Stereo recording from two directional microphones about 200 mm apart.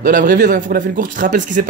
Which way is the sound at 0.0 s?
40° right (ahead or behind).